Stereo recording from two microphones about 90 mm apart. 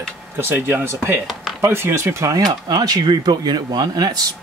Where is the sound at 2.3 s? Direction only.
45° right (ahead or behind).